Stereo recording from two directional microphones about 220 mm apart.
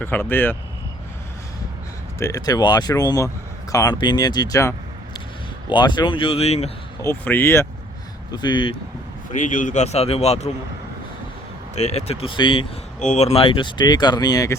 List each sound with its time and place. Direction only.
0.0 s speech: 10° left (ahead or behind)
2.1 s speech: 15° left (ahead or behind)
7.0 s speech: 10° left (ahead or behind)
9.3 s speech: 35° left (ahead or behind)
11.7 s speech: 30° left (ahead or behind)